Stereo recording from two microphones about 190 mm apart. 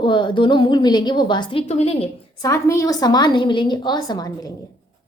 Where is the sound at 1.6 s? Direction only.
35° left (ahead or behind).